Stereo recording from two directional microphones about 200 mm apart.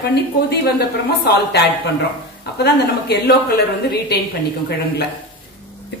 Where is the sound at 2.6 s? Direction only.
55° left (ahead or behind).